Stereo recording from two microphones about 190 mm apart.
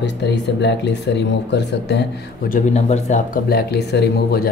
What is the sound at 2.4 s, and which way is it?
Speech, 40° left (ahead or behind).